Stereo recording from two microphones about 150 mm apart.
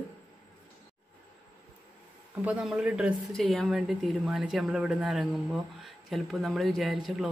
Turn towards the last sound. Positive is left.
turn(degrees=0)  # may be behind; listen again after turning